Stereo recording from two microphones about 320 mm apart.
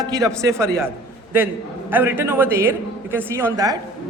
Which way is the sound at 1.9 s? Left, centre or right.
Centre.